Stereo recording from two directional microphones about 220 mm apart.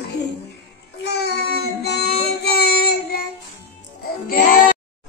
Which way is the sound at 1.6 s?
50° left (ahead or behind).